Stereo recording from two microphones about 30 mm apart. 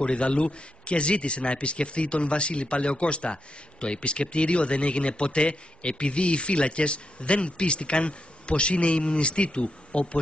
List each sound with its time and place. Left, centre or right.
0.0 s a man's voice: left